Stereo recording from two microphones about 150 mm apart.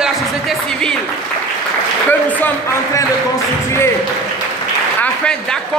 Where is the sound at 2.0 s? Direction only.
15° left (ahead or behind).